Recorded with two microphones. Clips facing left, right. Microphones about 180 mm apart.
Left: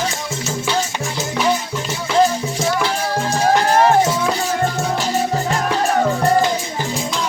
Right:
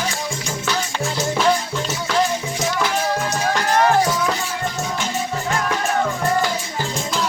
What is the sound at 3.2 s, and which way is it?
Music, 30° left (ahead or behind).